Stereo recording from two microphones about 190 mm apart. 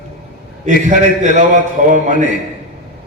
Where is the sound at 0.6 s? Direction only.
40° right (ahead or behind).